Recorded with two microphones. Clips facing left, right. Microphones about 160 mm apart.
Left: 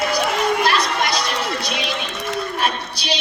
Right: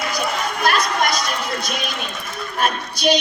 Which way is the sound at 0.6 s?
45° right (ahead or behind).